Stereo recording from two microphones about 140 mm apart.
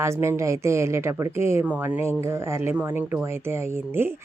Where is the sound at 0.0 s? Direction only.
20° right (ahead or behind).